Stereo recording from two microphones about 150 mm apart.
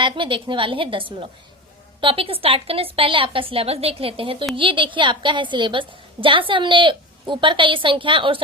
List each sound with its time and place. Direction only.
0.0 s a woman's voice: 35° right (ahead or behind)